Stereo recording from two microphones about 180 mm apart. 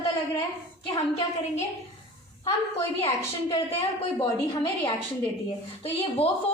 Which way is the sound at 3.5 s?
30° left (ahead or behind).